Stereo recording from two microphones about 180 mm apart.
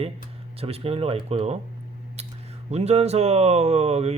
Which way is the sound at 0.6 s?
35° right (ahead or behind).